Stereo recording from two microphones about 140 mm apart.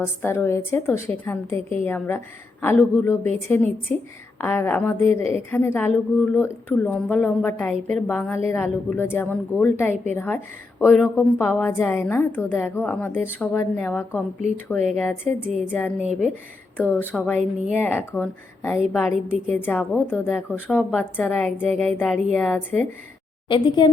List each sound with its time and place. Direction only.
0.0 s a woman's voice: 15° left (ahead or behind)
16.0 s speech: 5° right (ahead or behind)
16.7 s a woman's voice: 15° left (ahead or behind)
23.5 s a woman's voice: 35° left (ahead or behind)